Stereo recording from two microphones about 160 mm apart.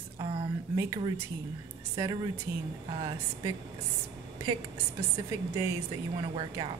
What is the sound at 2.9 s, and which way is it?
Speech, 30° right (ahead or behind).